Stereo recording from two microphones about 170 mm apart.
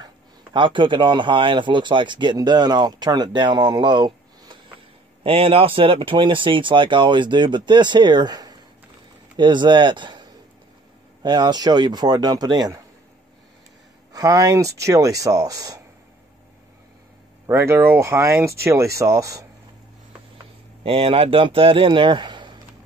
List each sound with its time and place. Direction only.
0.0 s a man's voice: 30° right (ahead or behind)
11.2 s speech: 25° right (ahead or behind)
14.1 s speech: 20° right (ahead or behind)
17.5 s speech: 15° right (ahead or behind)
20.8 s speech: 35° right (ahead or behind)